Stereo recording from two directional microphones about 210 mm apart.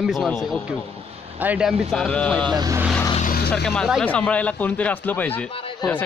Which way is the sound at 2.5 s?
20° right (ahead or behind).